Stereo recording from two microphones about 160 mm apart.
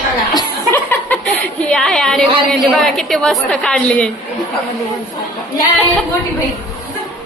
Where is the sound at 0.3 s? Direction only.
15° left (ahead or behind).